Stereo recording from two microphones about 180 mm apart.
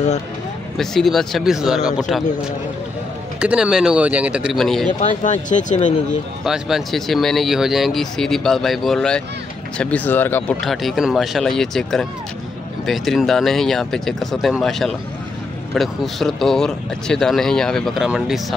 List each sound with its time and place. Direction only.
0.7 s speech: centre (ahead or behind)
3.3 s speech: 5° right (ahead or behind)
5.0 s speech: 45° left (ahead or behind)
6.0 s speech: centre (ahead or behind)
10.6 s speech: centre (ahead or behind)